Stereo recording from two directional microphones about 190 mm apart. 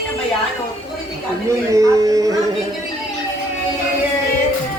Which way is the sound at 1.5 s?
15° right (ahead or behind).